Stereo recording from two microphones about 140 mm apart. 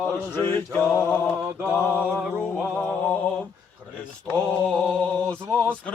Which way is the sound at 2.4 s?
10° left (ahead or behind).